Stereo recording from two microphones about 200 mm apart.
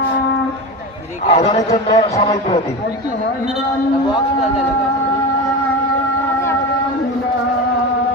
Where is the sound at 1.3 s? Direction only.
35° left (ahead or behind).